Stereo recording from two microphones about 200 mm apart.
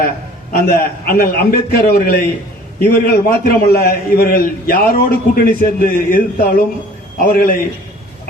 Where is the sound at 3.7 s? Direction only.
50° left (ahead or behind).